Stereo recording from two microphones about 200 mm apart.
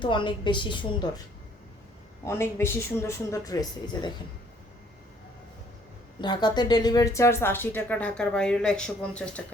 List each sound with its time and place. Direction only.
0.0 s a woman's voice: 25° left (ahead or behind)
2.2 s a woman's voice: 10° left (ahead or behind)
6.2 s a woman's voice: 20° left (ahead or behind); by 9.4 s 5° left (ahead or behind)